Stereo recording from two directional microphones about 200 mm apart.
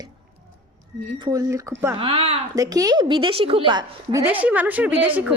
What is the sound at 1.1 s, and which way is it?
Speech, 20° right (ahead or behind).